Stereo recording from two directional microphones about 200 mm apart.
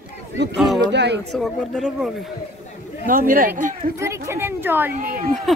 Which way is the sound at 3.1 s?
45° right (ahead or behind).